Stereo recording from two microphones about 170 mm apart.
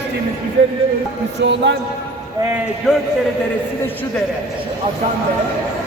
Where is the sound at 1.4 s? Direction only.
90° right.